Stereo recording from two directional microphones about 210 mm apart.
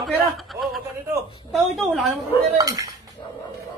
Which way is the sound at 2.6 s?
15° right (ahead or behind).